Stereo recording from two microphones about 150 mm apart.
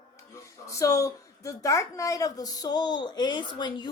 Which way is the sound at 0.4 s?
20° left (ahead or behind).